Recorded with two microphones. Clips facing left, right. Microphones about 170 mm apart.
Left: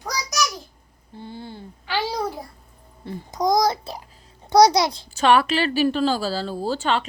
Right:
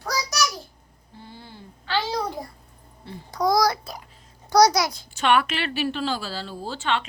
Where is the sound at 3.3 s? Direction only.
20° left (ahead or behind); by 7.0 s 40° left (ahead or behind).